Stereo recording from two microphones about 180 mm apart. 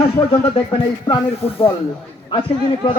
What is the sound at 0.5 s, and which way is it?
Speech, 25° left (ahead or behind).